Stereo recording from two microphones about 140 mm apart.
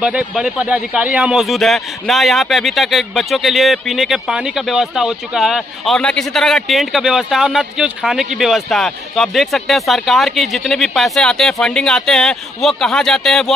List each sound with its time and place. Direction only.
0.0 s speech: 5° right (ahead or behind)